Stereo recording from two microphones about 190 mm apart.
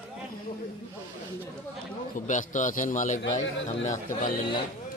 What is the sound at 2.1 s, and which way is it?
A man's voice, 40° left (ahead or behind).